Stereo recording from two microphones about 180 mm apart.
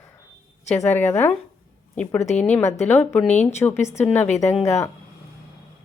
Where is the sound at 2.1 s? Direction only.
40° left (ahead or behind).